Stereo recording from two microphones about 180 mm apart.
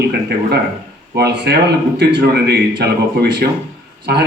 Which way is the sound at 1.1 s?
65° right (ahead or behind).